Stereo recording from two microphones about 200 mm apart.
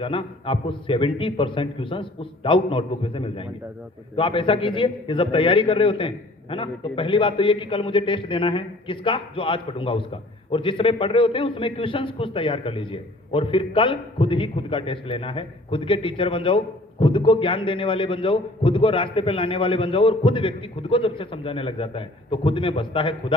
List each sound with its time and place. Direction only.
0.0 s a man's voice: 25° left (ahead or behind)